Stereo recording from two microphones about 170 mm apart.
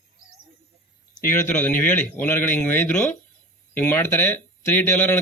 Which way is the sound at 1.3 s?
10° left (ahead or behind).